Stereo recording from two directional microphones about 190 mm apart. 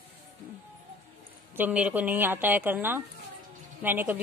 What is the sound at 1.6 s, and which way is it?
A woman's voice, 5° right (ahead or behind).